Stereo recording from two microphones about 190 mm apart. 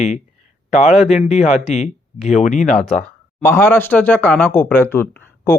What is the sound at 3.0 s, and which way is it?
Speech, 10° left (ahead or behind).